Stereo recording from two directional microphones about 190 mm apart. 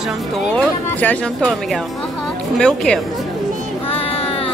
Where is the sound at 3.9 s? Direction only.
30° left (ahead or behind).